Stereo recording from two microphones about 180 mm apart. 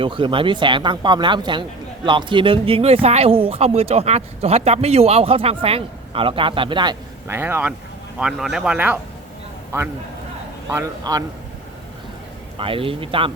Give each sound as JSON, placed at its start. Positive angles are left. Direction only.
{"t": 0.0, "sound": "speech", "side_deg": -30}
{"t": 7.3, "sound": "speech", "side_deg": -15}
{"t": 10.7, "sound": "speech", "side_deg": -15}
{"t": 12.5, "sound": "speech", "side_deg": -30}